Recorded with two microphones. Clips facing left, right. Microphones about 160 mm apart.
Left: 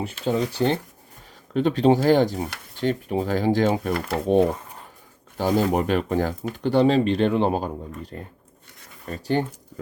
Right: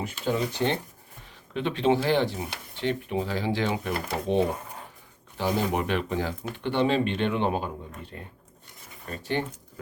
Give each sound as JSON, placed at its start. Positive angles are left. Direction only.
{"t": 0.0, "sound": "speech", "side_deg": 35}